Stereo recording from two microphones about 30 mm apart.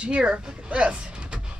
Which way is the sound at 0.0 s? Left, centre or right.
Right.